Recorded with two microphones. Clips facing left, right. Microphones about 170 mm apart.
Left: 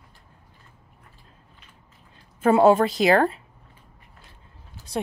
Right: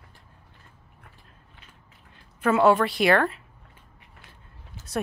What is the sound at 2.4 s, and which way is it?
Speech, 25° left (ahead or behind).